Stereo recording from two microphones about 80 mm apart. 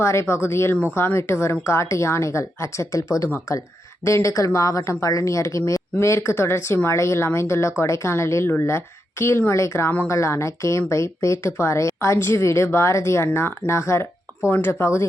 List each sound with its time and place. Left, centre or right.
0.0 s a woman's voice: left